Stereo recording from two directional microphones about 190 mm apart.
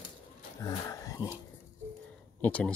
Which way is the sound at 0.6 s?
20° left (ahead or behind).